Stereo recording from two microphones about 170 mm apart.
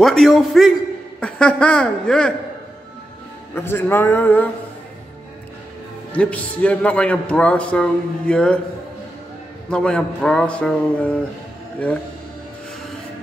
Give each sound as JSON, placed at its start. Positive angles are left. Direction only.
{"t": 0.0, "sound": "speech", "side_deg": 0}
{"t": 3.5, "sound": "a man's voice", "side_deg": 15}
{"t": 6.1, "sound": "a man's voice", "side_deg": 10}
{"t": 9.7, "sound": "a man's voice", "side_deg": 5}